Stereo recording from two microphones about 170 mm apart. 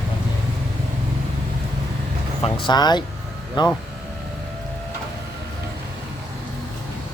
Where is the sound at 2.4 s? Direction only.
30° left (ahead or behind).